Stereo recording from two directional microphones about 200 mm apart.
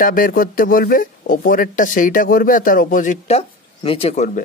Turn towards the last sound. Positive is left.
turn(degrees=30)  # may be behind; listen again after turning